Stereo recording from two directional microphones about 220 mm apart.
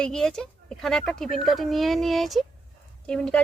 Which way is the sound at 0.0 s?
Centre (ahead or behind).